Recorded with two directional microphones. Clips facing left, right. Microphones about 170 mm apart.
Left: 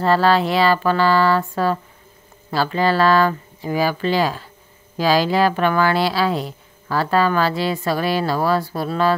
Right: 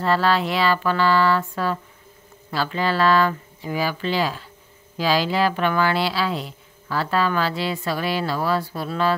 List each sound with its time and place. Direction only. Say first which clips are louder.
0.0 s speech: left 4 dB; 40° left (ahead or behind)